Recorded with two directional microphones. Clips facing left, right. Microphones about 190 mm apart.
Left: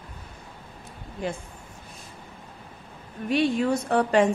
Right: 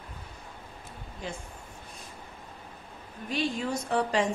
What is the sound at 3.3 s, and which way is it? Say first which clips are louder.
A woman's voice: left 8 dB; 65° left (ahead or behind).